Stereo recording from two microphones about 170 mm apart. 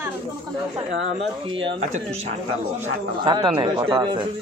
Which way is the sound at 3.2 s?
25° right (ahead or behind).